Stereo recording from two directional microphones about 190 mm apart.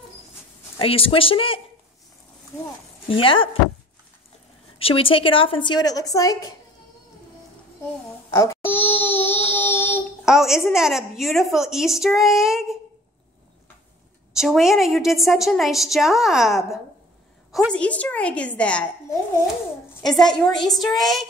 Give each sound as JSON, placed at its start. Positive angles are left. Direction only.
{"t": 0.7, "sound": "a woman's voice", "side_deg": 30}
{"t": 3.1, "sound": "a woman's voice", "side_deg": 25}
{"t": 4.7, "sound": "a woman's voice", "side_deg": 30}
{"t": 8.3, "sound": "baby cry", "side_deg": 15}
{"t": 10.2, "sound": "a woman's voice", "side_deg": 0}
{"t": 14.3, "sound": "a woman's voice", "side_deg": 0}
{"t": 20.1, "sound": "a woman's voice", "side_deg": 0}